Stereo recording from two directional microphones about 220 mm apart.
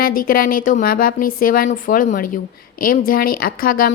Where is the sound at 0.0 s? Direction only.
40° left (ahead or behind).